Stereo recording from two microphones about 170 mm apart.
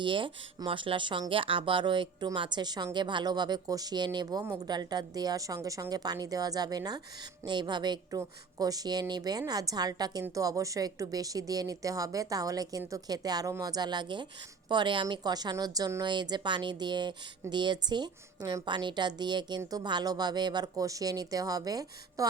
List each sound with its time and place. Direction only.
0.0 s a woman's voice: 30° right (ahead or behind)